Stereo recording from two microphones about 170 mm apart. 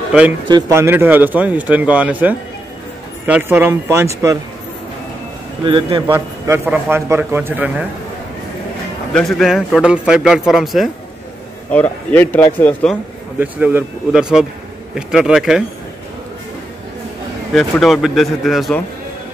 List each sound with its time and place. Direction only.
0.5 s speech: 20° right (ahead or behind)
5.7 s a man's voice: 30° right (ahead or behind)
6.1 s speech: 15° right (ahead or behind)
9.1 s a man's voice: centre (ahead or behind)
11.7 s speech: 10° left (ahead or behind)
13.4 s a man's voice: 10° right (ahead or behind)
17.6 s a man's voice: centre (ahead or behind)